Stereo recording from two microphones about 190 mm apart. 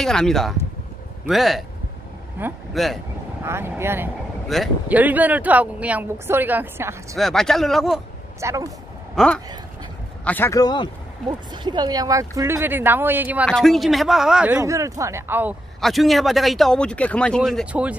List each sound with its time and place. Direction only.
0.0 s speech: 5° left (ahead or behind)
2.7 s speech: centre (ahead or behind)
3.4 s speech: 10° right (ahead or behind)
7.2 s speech: centre (ahead or behind)
8.4 s speech: 15° right (ahead or behind)
9.1 s speech: 5° left (ahead or behind); by 10.9 s 20° left (ahead or behind)
11.2 s speech: 25° right (ahead or behind)
13.5 s speech: centre (ahead or behind)
15.8 s speech: centre (ahead or behind)